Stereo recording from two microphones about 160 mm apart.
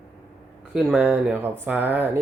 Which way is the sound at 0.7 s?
Centre (ahead or behind).